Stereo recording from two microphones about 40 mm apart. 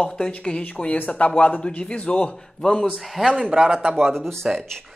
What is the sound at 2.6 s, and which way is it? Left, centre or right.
Speech, centre.